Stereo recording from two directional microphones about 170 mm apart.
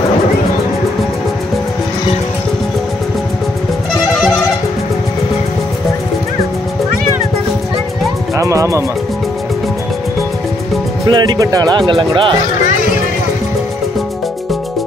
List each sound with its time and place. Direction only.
8.4 s music: 20° right (ahead or behind)
11.1 s speech: 25° right (ahead or behind)